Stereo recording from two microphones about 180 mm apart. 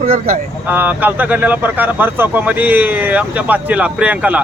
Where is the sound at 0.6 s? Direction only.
10° right (ahead or behind).